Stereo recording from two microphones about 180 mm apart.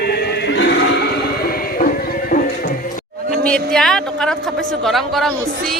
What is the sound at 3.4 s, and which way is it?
Speech, 5° left (ahead or behind).